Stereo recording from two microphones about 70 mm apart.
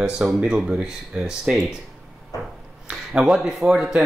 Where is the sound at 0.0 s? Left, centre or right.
Centre.